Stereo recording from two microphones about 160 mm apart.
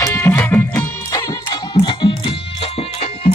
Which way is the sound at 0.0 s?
15° left (ahead or behind).